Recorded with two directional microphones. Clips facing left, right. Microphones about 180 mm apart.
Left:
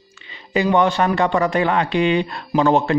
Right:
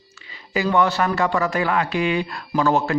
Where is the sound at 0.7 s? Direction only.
15° left (ahead or behind).